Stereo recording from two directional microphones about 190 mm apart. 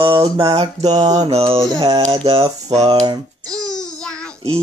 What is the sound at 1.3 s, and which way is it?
Speech, 30° right (ahead or behind).